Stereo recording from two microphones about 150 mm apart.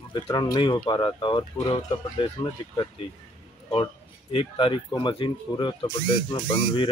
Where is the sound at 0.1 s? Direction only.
25° left (ahead or behind).